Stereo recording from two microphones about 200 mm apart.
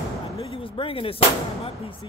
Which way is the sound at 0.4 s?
25° left (ahead or behind).